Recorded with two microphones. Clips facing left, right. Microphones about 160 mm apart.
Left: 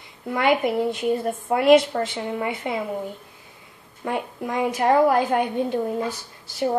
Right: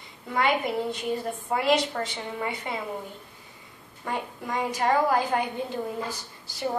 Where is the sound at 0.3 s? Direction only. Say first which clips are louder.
Left 5 dB; 55° left (ahead or behind).